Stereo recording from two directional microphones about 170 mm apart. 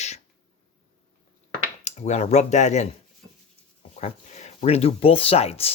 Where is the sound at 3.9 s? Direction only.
45° left (ahead or behind).